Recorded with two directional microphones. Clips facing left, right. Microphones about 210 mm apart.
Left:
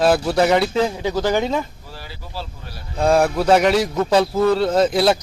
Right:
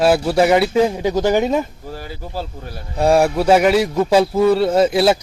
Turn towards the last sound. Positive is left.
turn(degrees=-5)  # may be behind; listen again after turning